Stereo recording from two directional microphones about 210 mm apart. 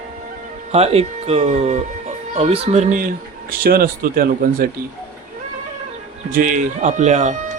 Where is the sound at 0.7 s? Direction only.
30° right (ahead or behind).